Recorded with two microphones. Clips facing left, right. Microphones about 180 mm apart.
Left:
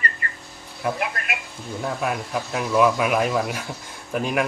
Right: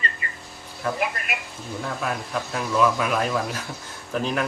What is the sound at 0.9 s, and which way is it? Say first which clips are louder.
Speech: right 1 dB; centre (ahead or behind).